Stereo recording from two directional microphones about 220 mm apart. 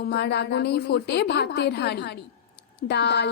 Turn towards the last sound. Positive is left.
turn(degrees=50)  # may be behind; listen again after turning